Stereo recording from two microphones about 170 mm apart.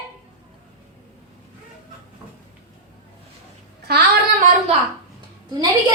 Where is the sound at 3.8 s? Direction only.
70° right (ahead or behind).